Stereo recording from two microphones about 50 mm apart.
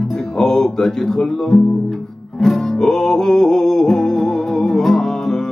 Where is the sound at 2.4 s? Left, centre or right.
Centre.